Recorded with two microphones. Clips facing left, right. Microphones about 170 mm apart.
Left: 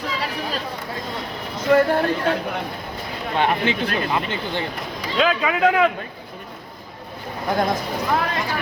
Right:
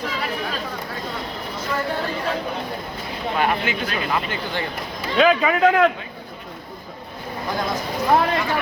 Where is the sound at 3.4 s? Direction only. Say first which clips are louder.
Left 2 dB; 30° left (ahead or behind).